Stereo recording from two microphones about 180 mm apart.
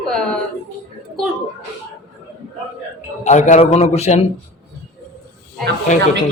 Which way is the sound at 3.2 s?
40° left (ahead or behind).